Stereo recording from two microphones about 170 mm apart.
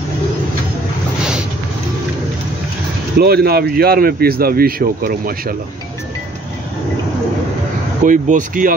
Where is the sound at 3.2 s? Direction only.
65° right (ahead or behind).